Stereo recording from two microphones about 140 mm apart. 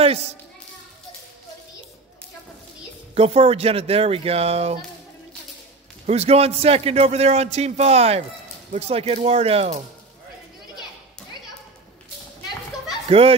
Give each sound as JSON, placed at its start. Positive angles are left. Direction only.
{"t": 0.0, "sound": "a child's voice", "side_deg": -50}
{"t": 3.2, "sound": "a man's voice", "side_deg": -45}
{"t": 6.0, "sound": "a man's voice", "side_deg": -50}
{"t": 13.1, "sound": "a man's voice", "side_deg": -45}